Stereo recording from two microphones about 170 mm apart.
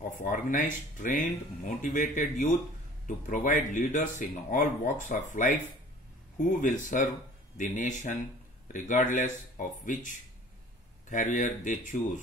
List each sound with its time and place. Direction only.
0.2 s speech: 50° left (ahead or behind)